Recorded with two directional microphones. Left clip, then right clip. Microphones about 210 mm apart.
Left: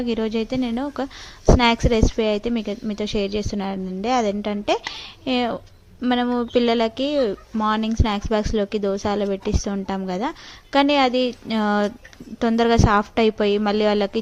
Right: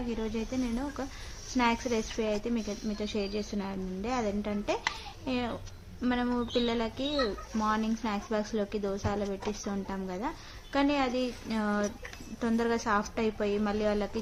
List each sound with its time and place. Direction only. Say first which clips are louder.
0.1 s speech: left 12 dB; 40° left (ahead or behind)